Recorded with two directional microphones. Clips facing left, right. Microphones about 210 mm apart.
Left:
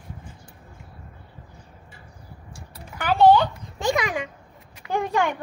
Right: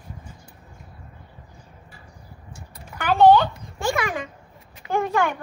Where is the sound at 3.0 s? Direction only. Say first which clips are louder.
Right 1 dB; 10° left (ahead or behind).